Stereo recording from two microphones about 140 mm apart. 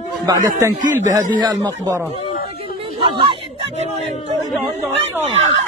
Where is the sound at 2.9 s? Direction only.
35° right (ahead or behind).